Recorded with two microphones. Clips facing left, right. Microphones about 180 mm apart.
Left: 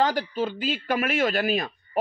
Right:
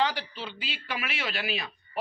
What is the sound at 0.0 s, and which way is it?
A man's voice, 45° left (ahead or behind).